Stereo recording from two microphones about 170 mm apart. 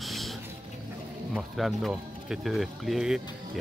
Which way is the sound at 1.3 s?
Centre (ahead or behind).